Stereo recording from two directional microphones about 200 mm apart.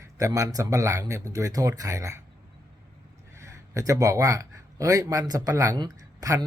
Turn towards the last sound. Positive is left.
turn(degrees=-15)  # may be behind; listen again after turning